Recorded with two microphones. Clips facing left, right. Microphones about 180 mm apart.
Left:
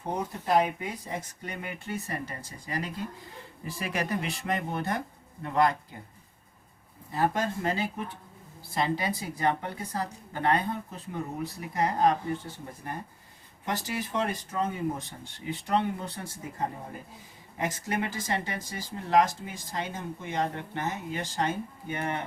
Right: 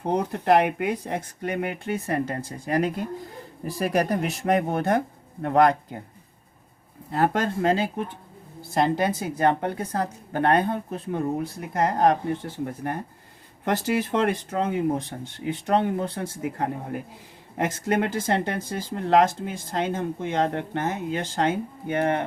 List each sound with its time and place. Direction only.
0.0 s speech: 70° right (ahead or behind)
3.6 s speech: 40° right (ahead or behind); by 6.0 s 55° right (ahead or behind)
7.1 s speech: 65° right (ahead or behind)
8.7 s speech: 50° right (ahead or behind)
11.7 s speech: 70° right (ahead or behind)
15.6 s speech: 55° right (ahead or behind)
16.4 s speech: 70° right (ahead or behind)